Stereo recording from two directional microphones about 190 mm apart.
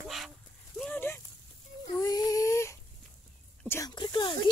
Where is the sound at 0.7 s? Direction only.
5° left (ahead or behind).